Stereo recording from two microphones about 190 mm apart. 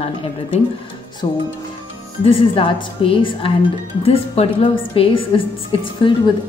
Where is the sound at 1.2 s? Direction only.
25° left (ahead or behind).